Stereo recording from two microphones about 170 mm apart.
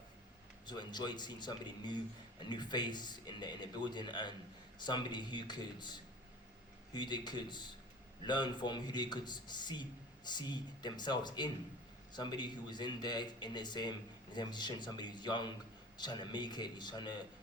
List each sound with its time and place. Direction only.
0.7 s speech: 25° left (ahead or behind)